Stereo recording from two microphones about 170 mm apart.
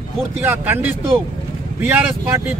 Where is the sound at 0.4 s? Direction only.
15° right (ahead or behind).